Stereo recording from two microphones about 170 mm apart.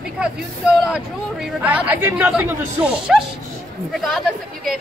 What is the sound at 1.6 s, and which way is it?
Speech, 10° right (ahead or behind).